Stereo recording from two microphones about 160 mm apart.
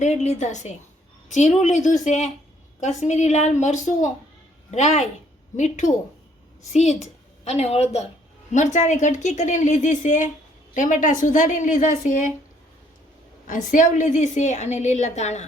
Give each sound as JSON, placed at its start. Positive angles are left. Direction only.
{"t": 0.0, "sound": "a woman's voice", "side_deg": 45}
{"t": 13.5, "sound": "a woman's voice", "side_deg": 55}